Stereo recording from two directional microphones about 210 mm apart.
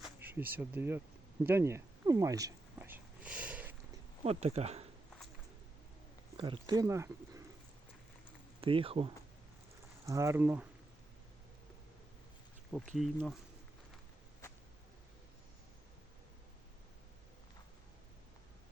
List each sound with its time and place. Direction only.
0.0 s speech: 10° right (ahead or behind)
1.5 s a sound: 10° right (ahead or behind)
4.2 s speech: 30° right (ahead or behind)
6.3 s speech: 20° right (ahead or behind)
8.6 s speech: 25° right (ahead or behind)
10.1 s speech: 15° right (ahead or behind)
13.0 s speech: centre (ahead or behind)